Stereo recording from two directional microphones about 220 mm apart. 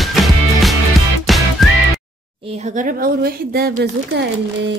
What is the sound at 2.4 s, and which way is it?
Speech, 30° right (ahead or behind).